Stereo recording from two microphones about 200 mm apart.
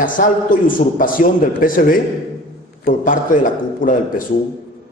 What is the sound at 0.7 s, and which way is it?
A man's voice, 45° left (ahead or behind).